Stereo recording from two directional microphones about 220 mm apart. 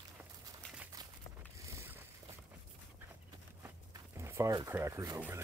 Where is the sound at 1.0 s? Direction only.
20° right (ahead or behind).